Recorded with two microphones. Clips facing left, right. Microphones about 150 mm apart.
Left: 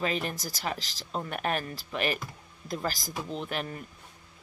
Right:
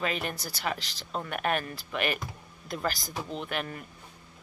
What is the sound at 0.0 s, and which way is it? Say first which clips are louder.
Speech: left 1 dB; 35° left (ahead or behind).